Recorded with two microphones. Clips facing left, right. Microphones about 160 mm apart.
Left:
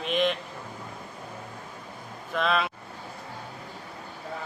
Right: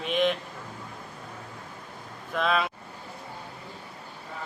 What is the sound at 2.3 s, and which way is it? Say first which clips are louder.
Mantra: even; centre (ahead or behind).